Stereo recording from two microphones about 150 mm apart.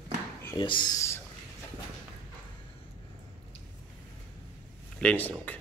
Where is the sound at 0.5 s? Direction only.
30° left (ahead or behind).